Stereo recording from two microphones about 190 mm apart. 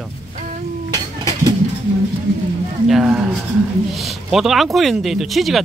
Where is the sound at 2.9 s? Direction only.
5° right (ahead or behind).